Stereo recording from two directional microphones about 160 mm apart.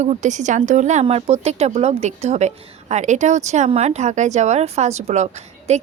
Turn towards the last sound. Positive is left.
turn(degrees=-45)  # may be behind; listen again after turning